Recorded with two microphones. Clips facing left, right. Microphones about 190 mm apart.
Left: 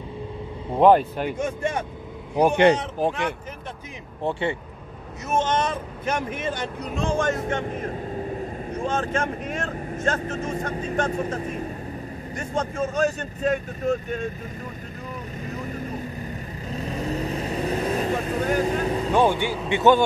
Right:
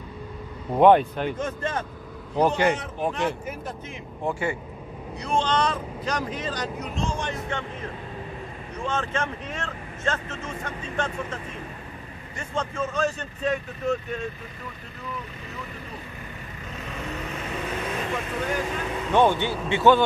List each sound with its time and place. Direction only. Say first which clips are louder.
0.7 s speech: even; centre (ahead or behind)
2.6 s speech: left 6 dB; 30° left (ahead or behind)
3.1 s speech: right 4 dB; centre (ahead or behind)
4.2 s speech: left 2 dB; 30° left (ahead or behind)
7.0 s speech: left 7 dB; 50° left (ahead or behind)
15.0 s vehicle: left 2 dB; 40° left (ahead or behind)
19.1 s speech: right 1 dB; 10° left (ahead or behind)